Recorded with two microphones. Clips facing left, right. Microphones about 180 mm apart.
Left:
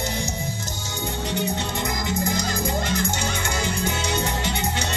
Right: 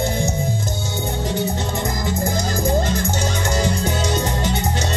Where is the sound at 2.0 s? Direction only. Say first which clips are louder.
Right 2 dB; 45° right (ahead or behind).